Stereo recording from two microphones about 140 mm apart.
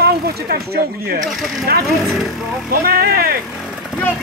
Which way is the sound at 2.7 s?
90° right.